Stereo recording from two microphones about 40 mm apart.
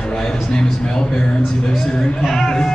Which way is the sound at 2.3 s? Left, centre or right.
Centre.